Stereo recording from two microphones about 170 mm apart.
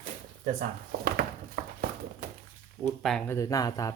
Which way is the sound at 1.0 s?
60° right (ahead or behind).